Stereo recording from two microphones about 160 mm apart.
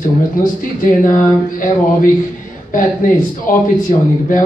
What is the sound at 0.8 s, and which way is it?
Speech, 55° left (ahead or behind).